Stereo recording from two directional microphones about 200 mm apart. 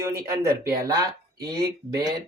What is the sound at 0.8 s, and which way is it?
Speech, 20° right (ahead or behind).